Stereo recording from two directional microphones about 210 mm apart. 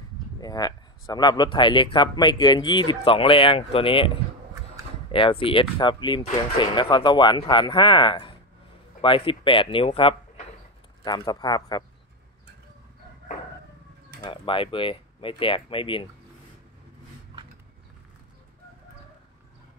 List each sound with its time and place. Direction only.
0.4 s speech: 20° left (ahead or behind)
5.1 s speech: 25° left (ahead or behind)
14.2 s speech: 25° left (ahead or behind)